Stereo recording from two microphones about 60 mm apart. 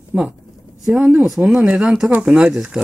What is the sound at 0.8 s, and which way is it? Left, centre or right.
Speech, centre.